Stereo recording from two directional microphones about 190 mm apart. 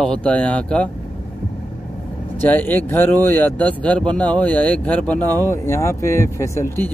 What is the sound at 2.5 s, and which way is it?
Speech, 10° left (ahead or behind).